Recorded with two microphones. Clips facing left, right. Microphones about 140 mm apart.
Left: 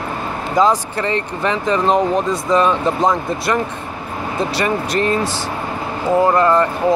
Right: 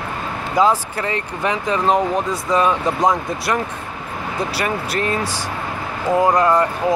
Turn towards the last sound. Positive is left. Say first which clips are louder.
# left 2 dB
turn(degrees=-10)  # may be behind; listen again after turning